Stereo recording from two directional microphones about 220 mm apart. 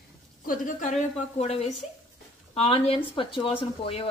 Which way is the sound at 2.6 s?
25° left (ahead or behind).